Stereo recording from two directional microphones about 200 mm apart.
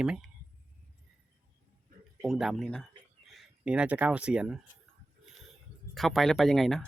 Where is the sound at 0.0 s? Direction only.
5° right (ahead or behind).